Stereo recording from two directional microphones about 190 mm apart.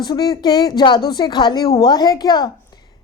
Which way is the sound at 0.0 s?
20° left (ahead or behind).